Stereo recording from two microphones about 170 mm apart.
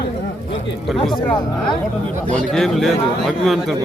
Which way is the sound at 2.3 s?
Centre (ahead or behind).